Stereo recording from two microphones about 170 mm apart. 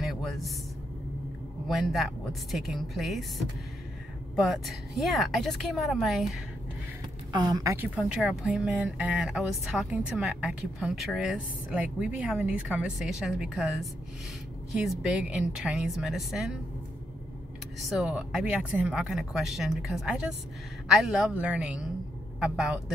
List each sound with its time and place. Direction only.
0.0 s a sound: centre (ahead or behind)
1.7 s speech: centre (ahead or behind)
7.3 s a woman's voice: 20° right (ahead or behind); by 16.5 s centre (ahead or behind)
17.7 s speech: centre (ahead or behind)